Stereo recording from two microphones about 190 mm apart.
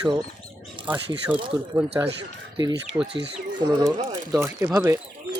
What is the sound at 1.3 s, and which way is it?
Speech, 25° right (ahead or behind).